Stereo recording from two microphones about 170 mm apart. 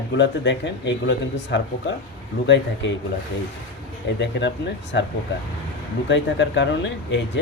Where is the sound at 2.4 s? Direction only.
90° left.